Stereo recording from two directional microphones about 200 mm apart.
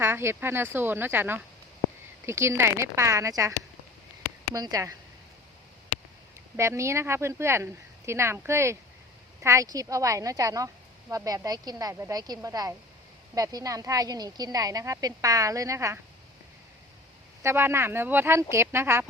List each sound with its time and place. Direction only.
0.0 s a woman's voice: 10° right (ahead or behind)
4.5 s a woman's voice: 20° right (ahead or behind)
6.6 s a woman's voice: 15° right (ahead or behind)
17.4 s a woman's voice: 10° right (ahead or behind)